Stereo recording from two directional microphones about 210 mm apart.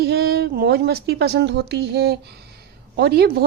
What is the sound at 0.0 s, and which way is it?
Speech, 50° right (ahead or behind).